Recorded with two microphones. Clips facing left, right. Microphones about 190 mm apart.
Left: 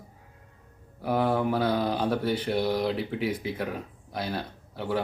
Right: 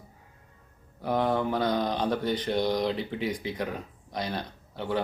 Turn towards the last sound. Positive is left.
turn(degrees=5)  # may be behind; listen again after turning